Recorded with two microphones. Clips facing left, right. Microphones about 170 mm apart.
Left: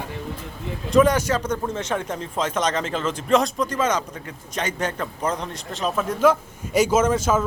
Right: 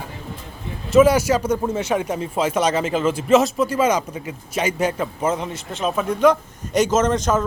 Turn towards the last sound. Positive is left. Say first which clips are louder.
# right 1 dB
turn(degrees=5)  # may be behind; listen again after turning